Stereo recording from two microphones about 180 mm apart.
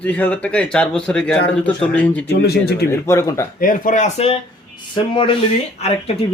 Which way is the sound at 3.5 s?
50° left (ahead or behind).